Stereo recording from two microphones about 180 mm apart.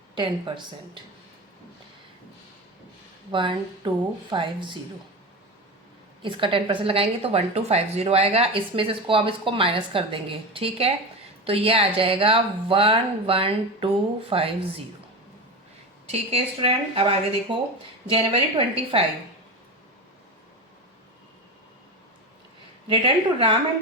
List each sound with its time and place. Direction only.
0.2 s speech: 25° right (ahead or behind)
3.3 s speech: 25° right (ahead or behind)
6.2 s a woman's voice: 30° right (ahead or behind)
16.0 s a woman's voice: 35° right (ahead or behind)
22.9 s speech: 30° right (ahead or behind)